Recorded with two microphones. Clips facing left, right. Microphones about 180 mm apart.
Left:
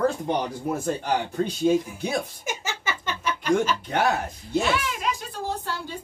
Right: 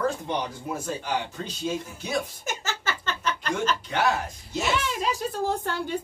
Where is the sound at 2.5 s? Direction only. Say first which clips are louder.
Left 3 dB; 10° left (ahead or behind).